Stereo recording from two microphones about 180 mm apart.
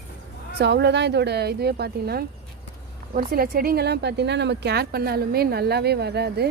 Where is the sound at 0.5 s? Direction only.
70° right (ahead or behind).